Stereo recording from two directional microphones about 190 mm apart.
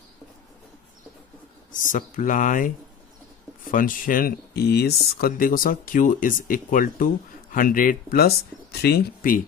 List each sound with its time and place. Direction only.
1.7 s speech: 45° left (ahead or behind)